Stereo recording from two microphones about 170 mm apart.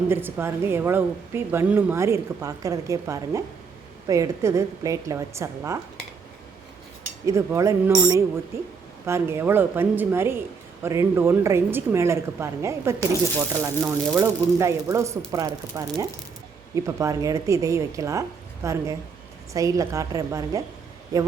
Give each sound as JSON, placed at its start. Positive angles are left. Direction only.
{"t": 0.1, "sound": "a woman's voice", "side_deg": -10}
{"t": 7.3, "sound": "a woman's voice", "side_deg": -15}